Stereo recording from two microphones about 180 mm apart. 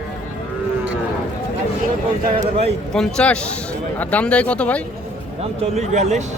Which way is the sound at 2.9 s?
5° left (ahead or behind).